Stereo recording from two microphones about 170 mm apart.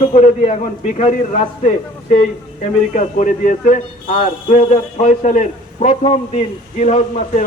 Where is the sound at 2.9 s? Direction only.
45° left (ahead or behind).